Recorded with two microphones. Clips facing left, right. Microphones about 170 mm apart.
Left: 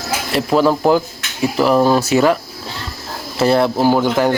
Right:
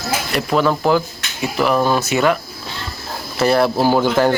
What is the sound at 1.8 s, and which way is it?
Speech, 35° left (ahead or behind).